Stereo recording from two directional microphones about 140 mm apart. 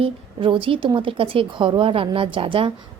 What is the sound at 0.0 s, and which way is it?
A woman's voice, 35° right (ahead or behind).